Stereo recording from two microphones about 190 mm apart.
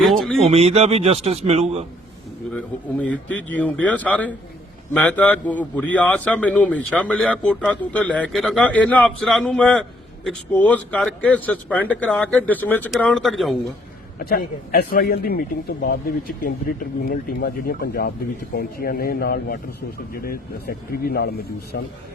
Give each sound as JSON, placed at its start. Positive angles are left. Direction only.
{"t": 0.0, "sound": "a sound", "side_deg": 0}
{"t": 0.4, "sound": "speech", "side_deg": -35}
{"t": 2.5, "sound": "a man's voice", "side_deg": 5}
{"t": 14.2, "sound": "a man's voice", "side_deg": 50}